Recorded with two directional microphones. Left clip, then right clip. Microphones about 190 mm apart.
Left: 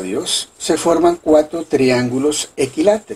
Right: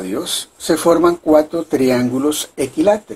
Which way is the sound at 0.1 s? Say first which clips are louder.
Left 3 dB; 25° right (ahead or behind).